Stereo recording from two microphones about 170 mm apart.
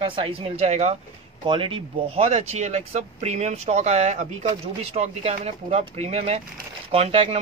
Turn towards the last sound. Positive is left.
turn(degrees=-35)  # may be behind; listen again after turning